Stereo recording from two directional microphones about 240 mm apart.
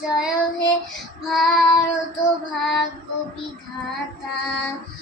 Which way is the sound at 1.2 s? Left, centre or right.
Centre.